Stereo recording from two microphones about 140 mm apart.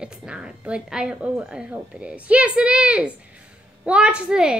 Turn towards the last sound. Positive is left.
turn(degrees=-5)  # may be behind; listen again after turning